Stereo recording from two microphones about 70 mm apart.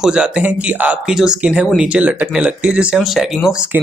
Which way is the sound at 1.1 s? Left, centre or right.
Centre.